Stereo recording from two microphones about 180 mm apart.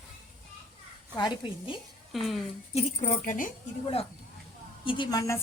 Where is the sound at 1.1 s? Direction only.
25° left (ahead or behind).